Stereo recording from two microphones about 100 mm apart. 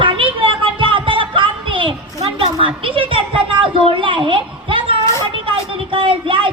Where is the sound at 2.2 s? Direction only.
65° right (ahead or behind).